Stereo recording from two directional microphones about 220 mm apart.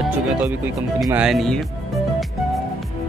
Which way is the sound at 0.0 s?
5° right (ahead or behind).